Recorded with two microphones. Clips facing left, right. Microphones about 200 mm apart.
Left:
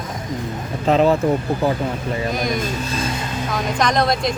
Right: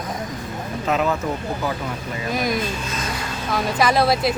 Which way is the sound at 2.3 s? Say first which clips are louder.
Left 1 dB; centre (ahead or behind).